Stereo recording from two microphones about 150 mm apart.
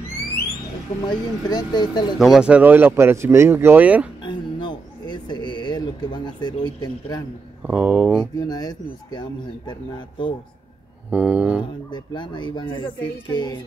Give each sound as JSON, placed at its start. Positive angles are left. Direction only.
{"t": 1.0, "sound": "speech", "side_deg": 25}
{"t": 2.1, "sound": "speech", "side_deg": 0}
{"t": 4.2, "sound": "speech", "side_deg": 30}
{"t": 7.6, "sound": "speech", "side_deg": -10}
{"t": 8.4, "sound": "speech", "side_deg": 25}
{"t": 11.1, "sound": "speech", "side_deg": -10}
{"t": 11.6, "sound": "speech", "side_deg": 30}